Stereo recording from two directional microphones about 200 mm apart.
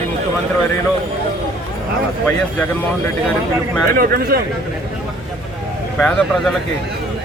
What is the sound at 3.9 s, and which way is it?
Speech, 50° right (ahead or behind).